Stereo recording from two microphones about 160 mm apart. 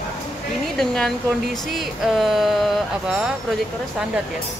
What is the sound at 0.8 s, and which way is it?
Speech, 5° left (ahead or behind).